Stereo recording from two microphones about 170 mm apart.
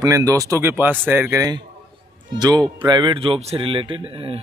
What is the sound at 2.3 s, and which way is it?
Speech, 25° right (ahead or behind).